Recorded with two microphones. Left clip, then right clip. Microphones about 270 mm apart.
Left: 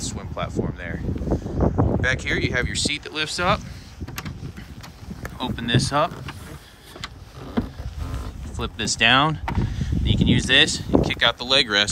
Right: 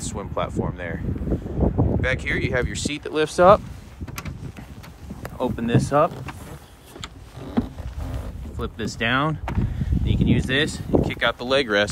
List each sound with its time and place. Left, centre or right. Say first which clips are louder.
0.1 s speech: right 3 dB; centre
1.6 s a sound: left 1 dB; right
2.0 s speech: left 1 dB; centre
5.2 s speech: right 3 dB; centre
8.5 s speech: left 5 dB; centre